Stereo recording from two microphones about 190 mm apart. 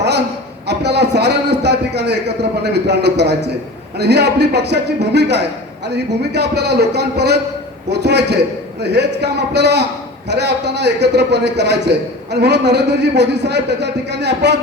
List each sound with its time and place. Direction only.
0.7 s a man's voice: 60° right (ahead or behind)